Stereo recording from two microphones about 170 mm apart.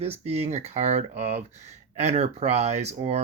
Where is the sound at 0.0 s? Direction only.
40° right (ahead or behind).